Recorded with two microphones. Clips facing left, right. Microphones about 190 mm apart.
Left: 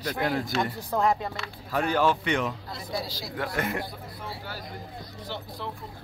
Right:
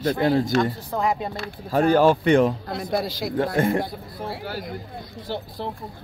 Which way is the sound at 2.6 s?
60° right (ahead or behind).